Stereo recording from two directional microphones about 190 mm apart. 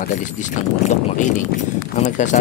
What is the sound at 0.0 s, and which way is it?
Speech, 40° left (ahead or behind).